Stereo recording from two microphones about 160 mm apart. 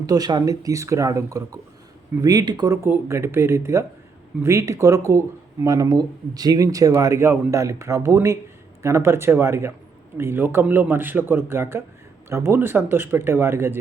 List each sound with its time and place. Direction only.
0.0 s a man's voice: 25° right (ahead or behind)